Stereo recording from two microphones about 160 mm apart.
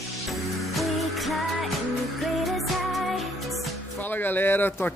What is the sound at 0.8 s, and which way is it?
Music, centre (ahead or behind).